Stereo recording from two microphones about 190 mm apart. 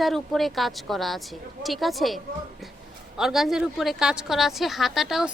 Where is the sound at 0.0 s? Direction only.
Centre (ahead or behind).